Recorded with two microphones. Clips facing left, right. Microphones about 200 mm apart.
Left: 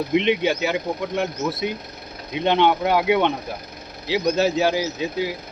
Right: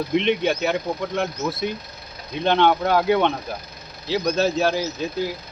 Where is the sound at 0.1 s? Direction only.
10° left (ahead or behind).